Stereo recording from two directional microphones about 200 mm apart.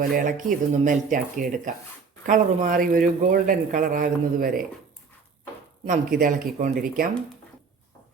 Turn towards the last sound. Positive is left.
turn(degrees=-45)  # may be behind; listen again after turning